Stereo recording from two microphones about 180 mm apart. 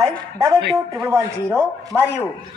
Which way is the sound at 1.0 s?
15° right (ahead or behind).